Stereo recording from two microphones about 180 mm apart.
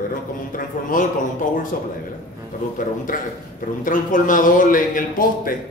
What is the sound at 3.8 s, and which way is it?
A man's voice, 45° left (ahead or behind).